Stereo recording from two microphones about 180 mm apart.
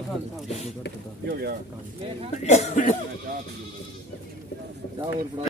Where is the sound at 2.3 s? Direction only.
40° left (ahead or behind).